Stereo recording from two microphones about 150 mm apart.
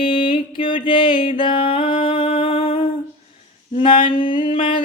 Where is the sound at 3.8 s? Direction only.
35° left (ahead or behind).